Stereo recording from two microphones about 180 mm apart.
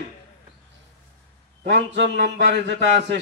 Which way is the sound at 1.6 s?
80° right.